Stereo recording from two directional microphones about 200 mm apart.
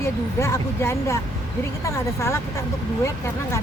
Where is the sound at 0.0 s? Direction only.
15° left (ahead or behind).